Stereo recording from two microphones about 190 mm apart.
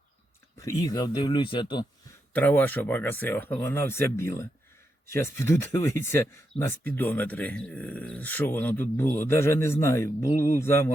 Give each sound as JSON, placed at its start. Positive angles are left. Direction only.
{"t": 0.6, "sound": "speech", "side_deg": 20}
{"t": 2.3, "sound": "speech", "side_deg": 10}